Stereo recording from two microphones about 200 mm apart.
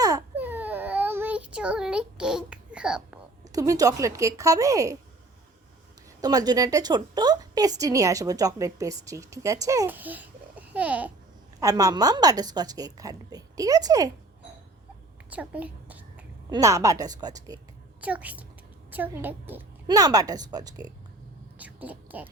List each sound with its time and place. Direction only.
0.0 s baby cry: 15° right (ahead or behind)
3.5 s a woman's voice: 15° right (ahead or behind)
6.2 s a woman's voice: 20° right (ahead or behind)
11.6 s a woman's voice: 15° right (ahead or behind)
15.3 s a sound: 5° right (ahead or behind)
16.5 s a woman's voice: 15° right (ahead or behind)
18.0 s a woman's voice: 5° right (ahead or behind)
21.6 s speech: 10° right (ahead or behind)